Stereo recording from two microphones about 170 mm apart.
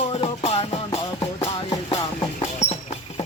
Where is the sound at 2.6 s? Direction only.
40° left (ahead or behind).